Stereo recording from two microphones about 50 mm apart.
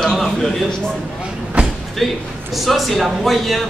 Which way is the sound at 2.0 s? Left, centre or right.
Centre.